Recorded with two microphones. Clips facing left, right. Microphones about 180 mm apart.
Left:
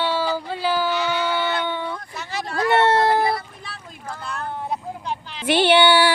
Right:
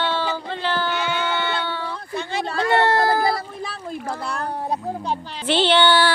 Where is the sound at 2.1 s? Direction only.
30° right (ahead or behind).